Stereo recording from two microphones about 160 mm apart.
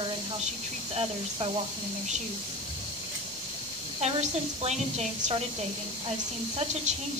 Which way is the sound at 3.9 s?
40° right (ahead or behind).